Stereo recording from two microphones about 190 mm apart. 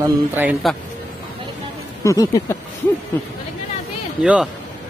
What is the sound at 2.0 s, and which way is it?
Speech, 20° left (ahead or behind).